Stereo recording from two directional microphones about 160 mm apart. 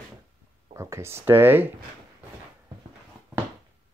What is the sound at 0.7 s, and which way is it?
Speech, 15° right (ahead or behind).